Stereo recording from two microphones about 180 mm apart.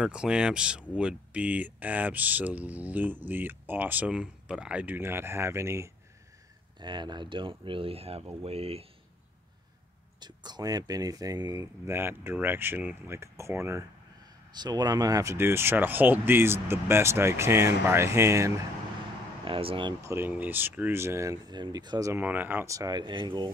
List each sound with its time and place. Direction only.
0.0 s speech: 5° right (ahead or behind); by 8.8 s 35° right (ahead or behind)
10.2 s speech: 25° right (ahead or behind)
19.4 s speech: 30° right (ahead or behind)